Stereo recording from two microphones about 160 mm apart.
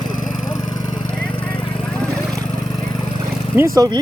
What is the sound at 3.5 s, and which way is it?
Speech, 20° right (ahead or behind).